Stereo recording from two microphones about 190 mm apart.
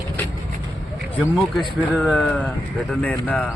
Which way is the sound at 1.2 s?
5° right (ahead or behind).